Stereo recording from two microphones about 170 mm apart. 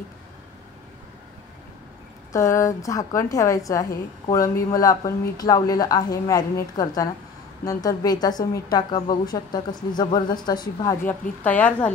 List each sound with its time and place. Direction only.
2.3 s a woman's voice: 20° left (ahead or behind)
11.1 s a woman's voice: 10° left (ahead or behind)